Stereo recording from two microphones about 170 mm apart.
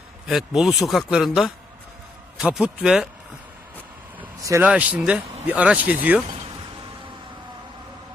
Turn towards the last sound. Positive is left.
turn(degrees=-30)  # may be behind; listen again after turning